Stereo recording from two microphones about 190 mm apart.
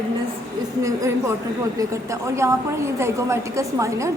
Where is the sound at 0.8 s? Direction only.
15° right (ahead or behind).